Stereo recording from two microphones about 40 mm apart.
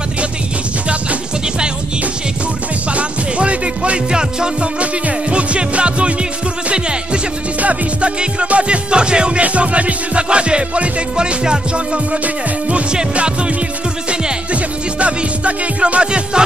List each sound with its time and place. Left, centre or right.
2.9 s music: right
14.5 s music: right